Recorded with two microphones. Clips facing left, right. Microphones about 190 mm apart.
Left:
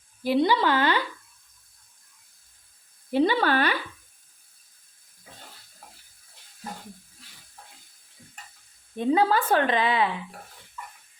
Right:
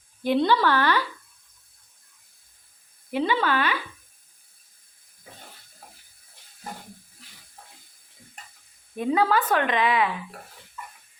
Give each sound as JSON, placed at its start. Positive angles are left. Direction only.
{"t": 0.2, "sound": "speech", "side_deg": 5}
{"t": 0.5, "sound": "speech", "side_deg": 15}
{"t": 3.1, "sound": "speech", "side_deg": 35}
{"t": 9.0, "sound": "a woman's voice", "side_deg": 25}